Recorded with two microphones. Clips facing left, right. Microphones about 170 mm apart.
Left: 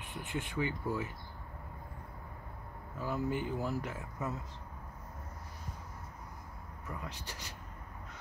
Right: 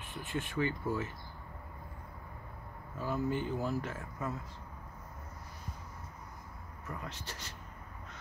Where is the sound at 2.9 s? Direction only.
15° left (ahead or behind).